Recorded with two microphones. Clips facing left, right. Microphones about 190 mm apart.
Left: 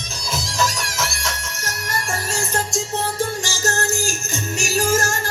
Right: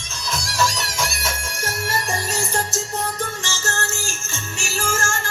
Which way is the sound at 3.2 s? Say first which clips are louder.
Left 5 dB; 35° left (ahead or behind).